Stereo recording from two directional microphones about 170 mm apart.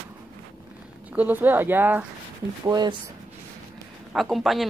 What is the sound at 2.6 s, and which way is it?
Speech, 25° right (ahead or behind).